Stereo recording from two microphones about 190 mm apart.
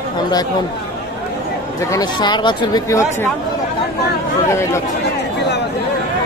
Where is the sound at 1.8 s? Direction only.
15° left (ahead or behind).